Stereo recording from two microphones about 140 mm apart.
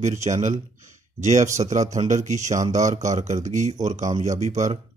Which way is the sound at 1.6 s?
40° right (ahead or behind).